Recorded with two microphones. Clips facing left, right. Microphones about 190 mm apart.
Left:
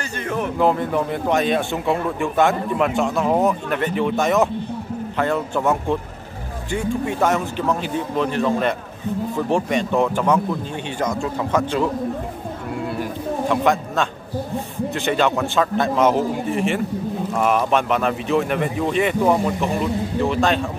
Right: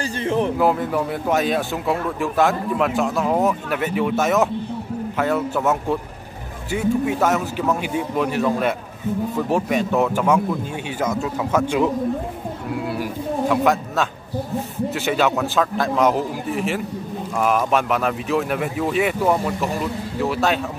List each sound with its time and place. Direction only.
0.0 s speech: 30° right (ahead or behind)
0.6 s a man's voice: 5° right (ahead or behind)